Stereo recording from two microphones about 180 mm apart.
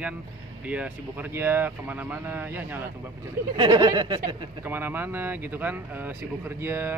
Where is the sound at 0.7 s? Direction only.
10° right (ahead or behind).